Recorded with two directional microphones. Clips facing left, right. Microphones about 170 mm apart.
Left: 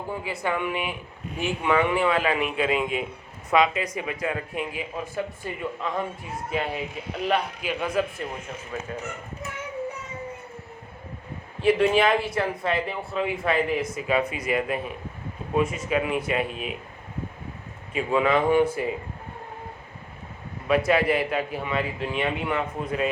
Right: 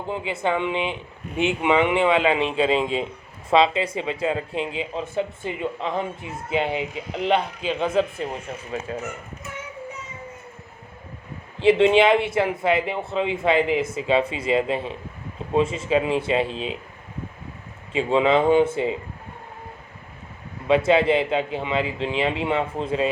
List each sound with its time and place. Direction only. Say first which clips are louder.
0.1 s speech: right 4 dB; 25° right (ahead or behind)
11.6 s speech: right 4 dB; 25° right (ahead or behind)
17.9 s speech: right 3 dB; 25° right (ahead or behind)
20.7 s speech: right 3 dB; 25° right (ahead or behind)